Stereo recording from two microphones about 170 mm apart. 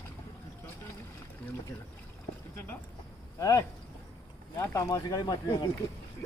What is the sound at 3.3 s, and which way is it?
Speech, 20° left (ahead or behind).